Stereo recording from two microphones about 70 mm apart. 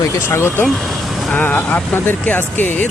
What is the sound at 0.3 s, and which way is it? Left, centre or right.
Speech, left.